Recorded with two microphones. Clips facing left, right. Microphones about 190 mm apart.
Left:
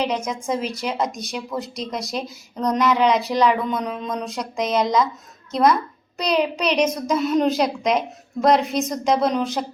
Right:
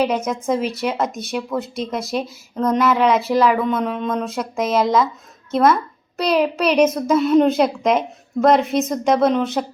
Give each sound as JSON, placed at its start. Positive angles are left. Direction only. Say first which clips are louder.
{"t": 0.0, "sound": "speech", "louder": "right 4 dB", "side_deg": -5}
{"t": 1.1, "sound": "speech", "louder": "right 5 dB", "side_deg": -55}
{"t": 1.5, "sound": "speech", "louder": "right 2 dB", "side_deg": -5}
{"t": 9.1, "sound": "speech", "louder": "right 4 dB", "side_deg": -55}
{"t": 9.4, "sound": "speech", "louder": "right 3 dB", "side_deg": 0}